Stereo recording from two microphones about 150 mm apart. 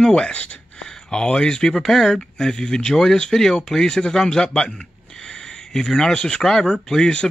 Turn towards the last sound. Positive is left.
turn(degrees=5)  # may be behind; listen again after turning